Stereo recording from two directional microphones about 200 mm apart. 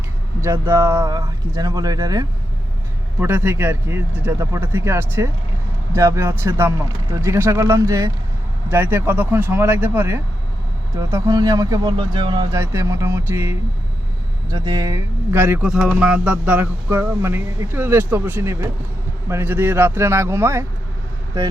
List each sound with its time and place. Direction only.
0.4 s speech: 10° right (ahead or behind)